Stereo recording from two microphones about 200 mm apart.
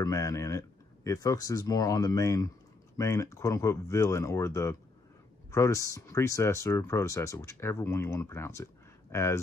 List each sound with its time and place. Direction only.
0.0 s speech: 15° left (ahead or behind)